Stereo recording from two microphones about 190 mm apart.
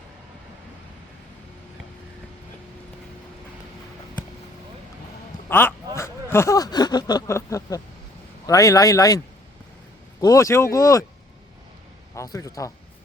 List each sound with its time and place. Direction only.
5.5 s speech: 10° left (ahead or behind)
12.1 s a man's voice: 15° left (ahead or behind)